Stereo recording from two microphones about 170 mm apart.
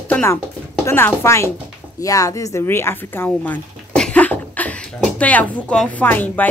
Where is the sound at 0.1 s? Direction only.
15° left (ahead or behind).